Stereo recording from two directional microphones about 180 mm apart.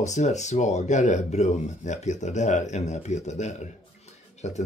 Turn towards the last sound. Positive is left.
turn(degrees=40)  # may be behind; listen again after turning